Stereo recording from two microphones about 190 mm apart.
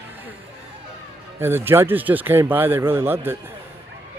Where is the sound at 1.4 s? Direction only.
10° right (ahead or behind).